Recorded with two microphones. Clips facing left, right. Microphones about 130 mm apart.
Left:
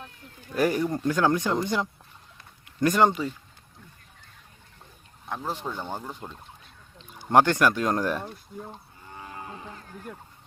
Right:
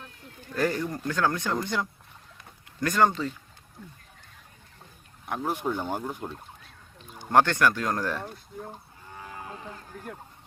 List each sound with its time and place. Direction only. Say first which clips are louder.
0.4 s speech: left 3 dB; 15° left (ahead or behind)
5.2 s speech: right 3 dB; 15° right (ahead or behind)
7.3 s speech: left 2 dB; 20° left (ahead or behind)